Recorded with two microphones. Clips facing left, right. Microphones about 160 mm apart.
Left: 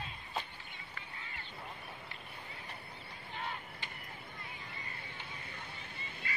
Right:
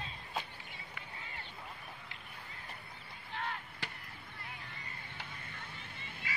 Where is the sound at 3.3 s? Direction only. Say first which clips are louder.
Right 2 dB; 70° right (ahead or behind).